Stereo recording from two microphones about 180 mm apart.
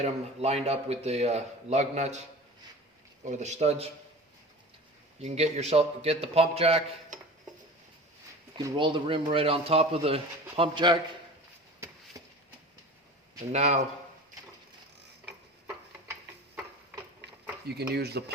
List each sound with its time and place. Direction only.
0.0 s speech: 35° right (ahead or behind)
3.2 s speech: 40° right (ahead or behind)
5.2 s speech: 35° right (ahead or behind)
8.5 s a man's voice: 25° right (ahead or behind)
12.1 s a sound: 20° right (ahead or behind)
13.5 s speech: 40° right (ahead or behind)
17.7 s speech: 65° right (ahead or behind)